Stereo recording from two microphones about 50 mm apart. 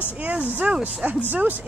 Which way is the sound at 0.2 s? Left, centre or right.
Right.